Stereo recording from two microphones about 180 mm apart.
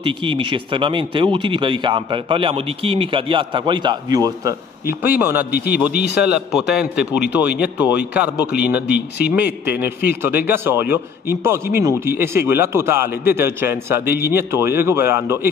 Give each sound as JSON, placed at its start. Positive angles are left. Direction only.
{"t": 0.0, "sound": "a man's voice", "side_deg": -30}